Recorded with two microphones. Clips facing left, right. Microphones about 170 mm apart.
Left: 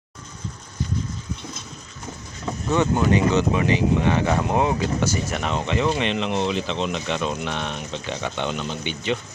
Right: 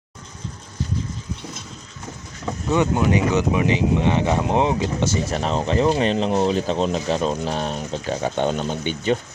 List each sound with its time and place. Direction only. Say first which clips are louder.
2.6 s speech: right 1 dB; 15° right (ahead or behind); by 9.1 s 45° right (ahead or behind)